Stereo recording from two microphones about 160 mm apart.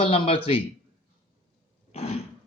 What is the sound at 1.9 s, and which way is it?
Throat clearing, 40° left (ahead or behind).